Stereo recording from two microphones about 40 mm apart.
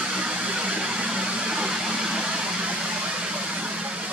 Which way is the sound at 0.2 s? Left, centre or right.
Right.